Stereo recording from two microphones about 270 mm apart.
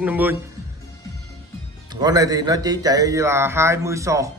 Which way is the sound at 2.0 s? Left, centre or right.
Centre.